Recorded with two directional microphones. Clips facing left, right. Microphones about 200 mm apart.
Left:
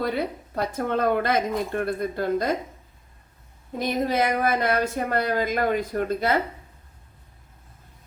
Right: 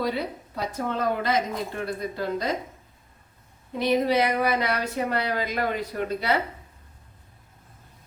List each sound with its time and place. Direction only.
0.5 s speech: 55° left (ahead or behind)
3.8 s speech: 45° left (ahead or behind)